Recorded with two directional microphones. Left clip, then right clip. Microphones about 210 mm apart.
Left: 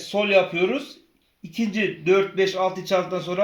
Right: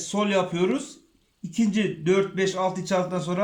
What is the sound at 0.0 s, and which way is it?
Speech, 35° right (ahead or behind).